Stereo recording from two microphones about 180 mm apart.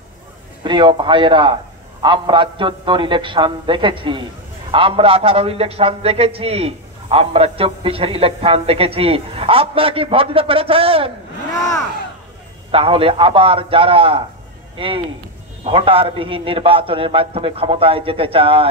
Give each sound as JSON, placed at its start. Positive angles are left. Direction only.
{"t": 0.7, "sound": "a man's voice", "side_deg": -25}
{"t": 12.7, "sound": "a man's voice", "side_deg": -30}